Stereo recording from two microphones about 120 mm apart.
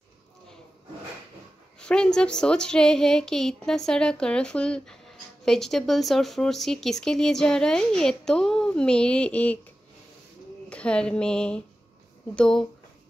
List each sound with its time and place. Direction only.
1.8 s a woman's voice: 10° left (ahead or behind)
10.7 s a woman's voice: 10° left (ahead or behind)